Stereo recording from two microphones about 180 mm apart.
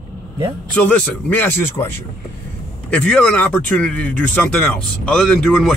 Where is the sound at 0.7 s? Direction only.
5° left (ahead or behind).